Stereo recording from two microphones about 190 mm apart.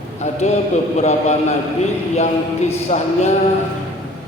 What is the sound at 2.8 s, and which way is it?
Speech, 35° left (ahead or behind).